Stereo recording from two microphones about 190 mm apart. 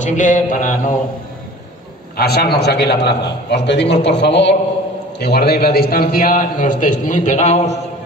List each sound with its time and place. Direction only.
0.0 s mantra: 40° left (ahead or behind)
2.1 s a man's voice: 55° left (ahead or behind); by 7.8 s 35° left (ahead or behind)